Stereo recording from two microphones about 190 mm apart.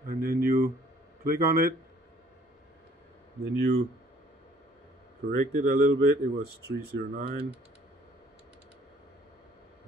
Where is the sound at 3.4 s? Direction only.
60° right (ahead or behind).